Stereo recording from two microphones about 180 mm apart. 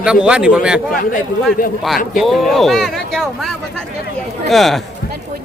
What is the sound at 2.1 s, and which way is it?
Speech, centre (ahead or behind).